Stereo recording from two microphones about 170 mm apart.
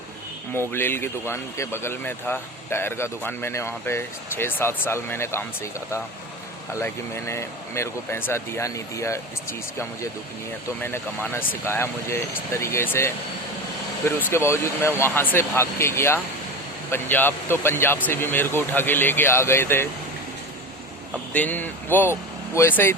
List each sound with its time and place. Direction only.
0.7 s speech: 15° left (ahead or behind)
14.3 s speech: 15° left (ahead or behind)
21.3 s speech: 10° left (ahead or behind)